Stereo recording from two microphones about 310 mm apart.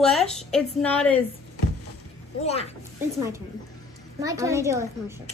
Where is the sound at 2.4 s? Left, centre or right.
Centre.